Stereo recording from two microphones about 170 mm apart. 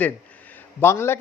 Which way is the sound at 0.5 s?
15° left (ahead or behind).